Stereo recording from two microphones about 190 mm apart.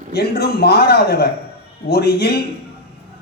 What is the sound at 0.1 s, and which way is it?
A man's voice, 55° left (ahead or behind).